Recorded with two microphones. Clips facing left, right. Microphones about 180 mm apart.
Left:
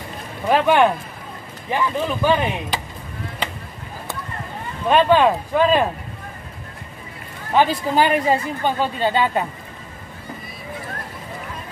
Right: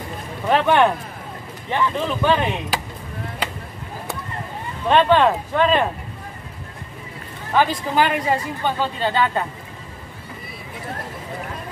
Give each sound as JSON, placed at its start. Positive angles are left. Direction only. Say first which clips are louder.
{"t": 0.5, "sound": "speech", "louder": "left 1 dB", "side_deg": 5}
{"t": 4.8, "sound": "speech", "louder": "left 1 dB", "side_deg": 5}
{"t": 7.5, "sound": "speech", "louder": "left 2 dB", "side_deg": 20}